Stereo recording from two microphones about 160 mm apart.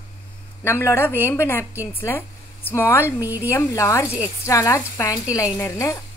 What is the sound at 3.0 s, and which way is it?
Speech, 10° right (ahead or behind).